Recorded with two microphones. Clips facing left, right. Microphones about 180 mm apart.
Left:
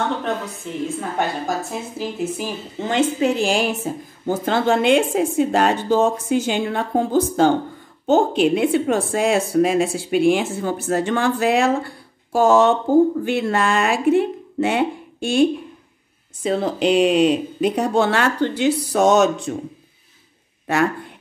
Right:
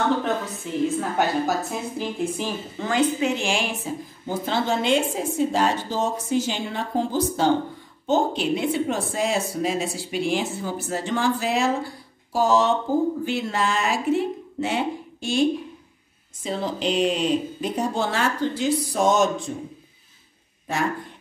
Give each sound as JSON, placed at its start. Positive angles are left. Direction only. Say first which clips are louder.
{"t": 0.8, "sound": "a woman's voice", "louder": "right 1 dB", "side_deg": 0}
{"t": 2.8, "sound": "a woman's voice", "louder": "left 2 dB", "side_deg": 25}
{"t": 3.2, "sound": "a woman's voice", "louder": "left 5 dB", "side_deg": 35}
{"t": 16.4, "sound": "speech", "louder": "left 7 dB", "side_deg": 65}